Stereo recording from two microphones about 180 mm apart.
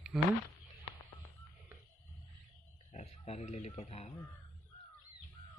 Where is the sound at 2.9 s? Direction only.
35° left (ahead or behind).